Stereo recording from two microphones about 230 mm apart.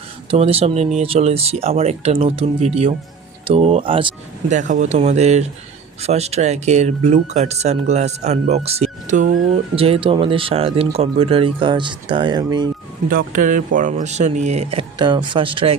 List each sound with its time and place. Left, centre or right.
0.3 s speech: right
13.1 s speech: right